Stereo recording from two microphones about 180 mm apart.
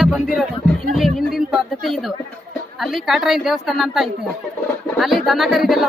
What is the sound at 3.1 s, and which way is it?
Speech, centre (ahead or behind).